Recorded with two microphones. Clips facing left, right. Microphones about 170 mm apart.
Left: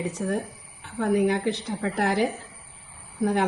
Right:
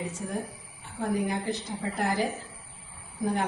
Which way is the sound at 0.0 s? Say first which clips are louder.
Left 6 dB; 70° left (ahead or behind).